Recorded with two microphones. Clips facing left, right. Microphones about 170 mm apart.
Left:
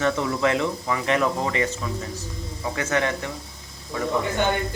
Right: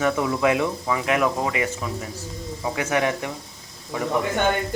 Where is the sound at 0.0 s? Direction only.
10° right (ahead or behind).